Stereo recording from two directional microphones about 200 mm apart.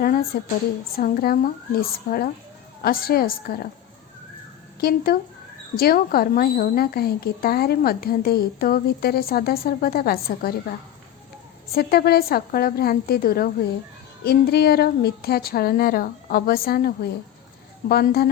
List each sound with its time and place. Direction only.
0.0 s a woman's voice: 50° left (ahead or behind)
4.8 s a woman's voice: 50° left (ahead or behind)
11.7 s a woman's voice: 50° left (ahead or behind)